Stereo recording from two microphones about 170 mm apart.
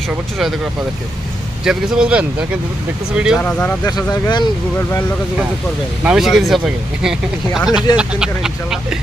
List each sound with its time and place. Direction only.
0.1 s speech: 5° right (ahead or behind)
3.4 s speech: 10° left (ahead or behind)
3.8 s speech: 25° left (ahead or behind)
6.0 s speech: 5° right (ahead or behind)